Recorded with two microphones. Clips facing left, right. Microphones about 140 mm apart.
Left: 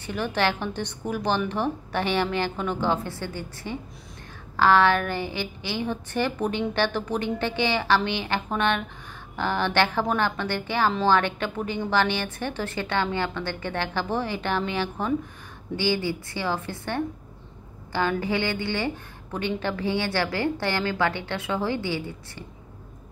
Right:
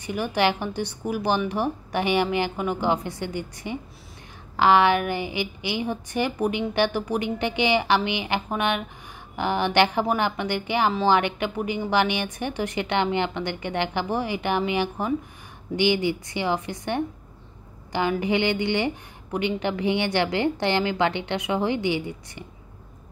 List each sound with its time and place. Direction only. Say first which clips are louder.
0.0 s a woman's voice: right 2 dB; 10° right (ahead or behind)